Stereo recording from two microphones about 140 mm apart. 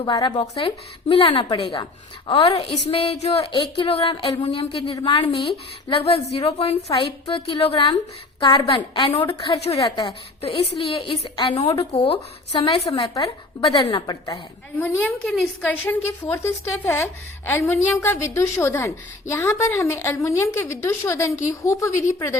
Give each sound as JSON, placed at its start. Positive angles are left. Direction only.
{"t": 0.0, "sound": "a woman's voice", "side_deg": 30}
{"t": 10.4, "sound": "a woman's voice", "side_deg": 45}
{"t": 12.9, "sound": "a woman's voice", "side_deg": 25}
{"t": 13.2, "sound": "a woman's voice", "side_deg": 35}
{"t": 14.8, "sound": "a woman's voice", "side_deg": 10}